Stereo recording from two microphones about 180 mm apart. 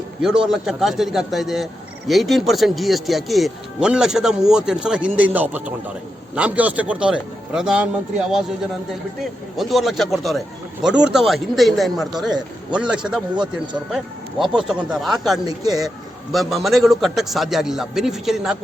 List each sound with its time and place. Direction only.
0.4 s a man's voice: centre (ahead or behind)
9.6 s a man's voice: centre (ahead or behind)
15.4 s speech: 20° right (ahead or behind)
16.3 s a man's voice: centre (ahead or behind)